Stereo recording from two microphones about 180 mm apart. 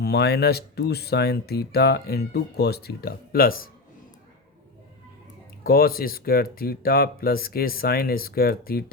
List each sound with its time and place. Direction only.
0.0 s speech: 60° left (ahead or behind)
5.6 s speech: 55° left (ahead or behind)